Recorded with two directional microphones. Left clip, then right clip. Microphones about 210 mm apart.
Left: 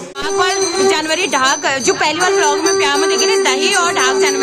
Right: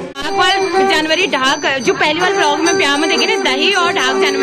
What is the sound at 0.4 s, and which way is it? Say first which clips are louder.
A woman's voice: right 3 dB; 5° left (ahead or behind).